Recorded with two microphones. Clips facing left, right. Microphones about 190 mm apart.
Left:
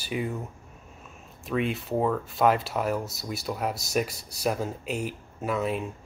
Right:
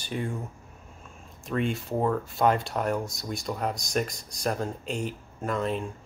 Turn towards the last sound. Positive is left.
turn(degrees=5)  # may be behind; listen again after turning